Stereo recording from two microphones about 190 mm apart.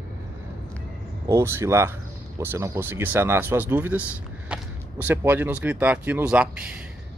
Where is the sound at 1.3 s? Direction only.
15° right (ahead or behind).